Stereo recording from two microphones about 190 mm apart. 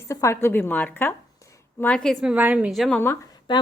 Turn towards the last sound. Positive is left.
turn(degrees=10)  # may be behind; listen again after turning